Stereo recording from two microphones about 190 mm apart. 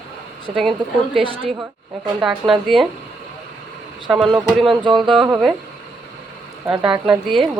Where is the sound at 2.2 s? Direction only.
Centre (ahead or behind).